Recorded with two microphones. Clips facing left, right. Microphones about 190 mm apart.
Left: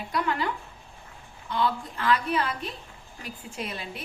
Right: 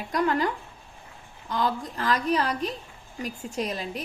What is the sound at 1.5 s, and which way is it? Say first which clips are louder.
A woman's voice: even; 40° right (ahead or behind).